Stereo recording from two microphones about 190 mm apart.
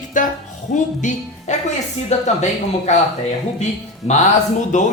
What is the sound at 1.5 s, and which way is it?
Speech, 40° left (ahead or behind).